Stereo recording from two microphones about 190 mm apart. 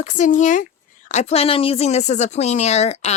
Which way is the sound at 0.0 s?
40° left (ahead or behind).